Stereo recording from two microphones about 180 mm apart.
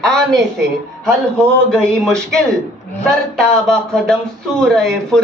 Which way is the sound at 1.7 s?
5° left (ahead or behind).